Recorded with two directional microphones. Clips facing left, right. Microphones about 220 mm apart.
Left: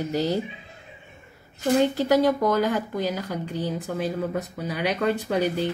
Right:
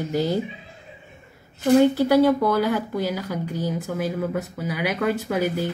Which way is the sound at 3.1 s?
10° right (ahead or behind).